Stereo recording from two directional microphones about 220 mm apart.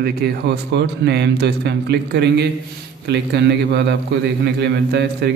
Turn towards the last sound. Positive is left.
turn(degrees=-50)  # may be behind; listen again after turning